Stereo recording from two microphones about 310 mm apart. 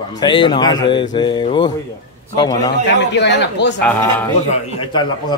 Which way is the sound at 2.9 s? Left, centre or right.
Left.